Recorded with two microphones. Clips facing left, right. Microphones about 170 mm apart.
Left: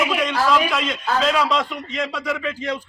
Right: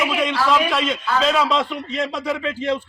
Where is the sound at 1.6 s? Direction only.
30° right (ahead or behind).